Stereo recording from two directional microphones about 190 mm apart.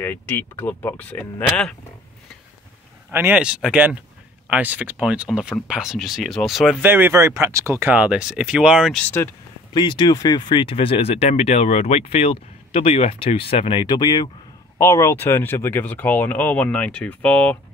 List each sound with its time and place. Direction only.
0.0 s speech: 10° left (ahead or behind)
3.1 s speech: 10° right (ahead or behind)
6.9 s speech: 10° right (ahead or behind)
9.0 s speech: 10° left (ahead or behind)
9.8 s speech: 20° left (ahead or behind)